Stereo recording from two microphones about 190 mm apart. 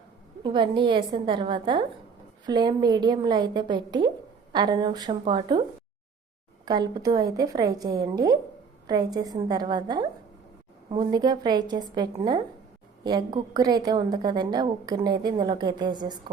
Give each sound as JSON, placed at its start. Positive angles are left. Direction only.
{"t": 0.4, "sound": "a woman's voice", "side_deg": -25}
{"t": 6.7, "sound": "a woman's voice", "side_deg": -20}